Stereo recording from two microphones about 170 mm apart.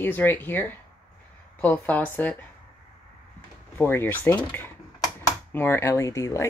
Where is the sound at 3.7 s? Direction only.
10° left (ahead or behind).